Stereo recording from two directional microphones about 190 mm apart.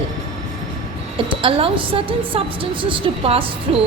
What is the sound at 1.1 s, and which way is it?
A woman's voice, 30° right (ahead or behind).